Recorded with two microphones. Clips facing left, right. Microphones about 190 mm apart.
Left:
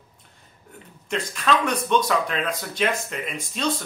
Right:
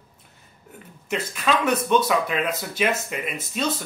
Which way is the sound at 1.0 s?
5° right (ahead or behind).